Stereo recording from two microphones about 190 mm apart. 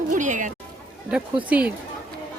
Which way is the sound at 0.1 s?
40° right (ahead or behind).